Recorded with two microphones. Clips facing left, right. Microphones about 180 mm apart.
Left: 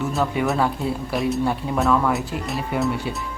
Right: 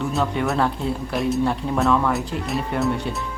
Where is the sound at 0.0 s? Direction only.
5° left (ahead or behind).